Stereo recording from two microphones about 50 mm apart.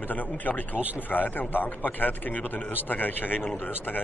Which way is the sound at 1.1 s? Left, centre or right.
Left.